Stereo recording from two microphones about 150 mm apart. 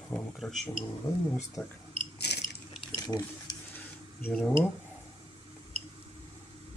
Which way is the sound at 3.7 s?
10° left (ahead or behind).